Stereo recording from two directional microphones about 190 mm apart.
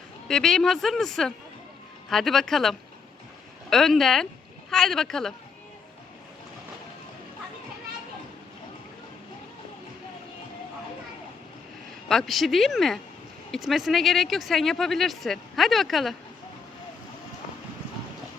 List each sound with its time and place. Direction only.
0.3 s speech: centre (ahead or behind)
12.0 s speech: centre (ahead or behind)